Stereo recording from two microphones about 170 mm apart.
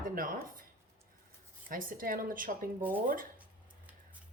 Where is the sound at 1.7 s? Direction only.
55° right (ahead or behind).